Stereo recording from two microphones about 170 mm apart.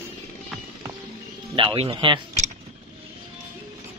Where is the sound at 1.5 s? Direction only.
30° right (ahead or behind).